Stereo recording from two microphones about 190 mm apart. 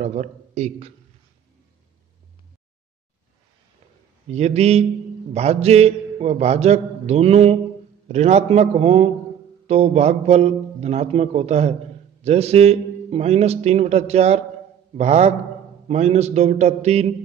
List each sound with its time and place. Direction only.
0.0 s a man's voice: 40° right (ahead or behind)
4.3 s a man's voice: 35° right (ahead or behind)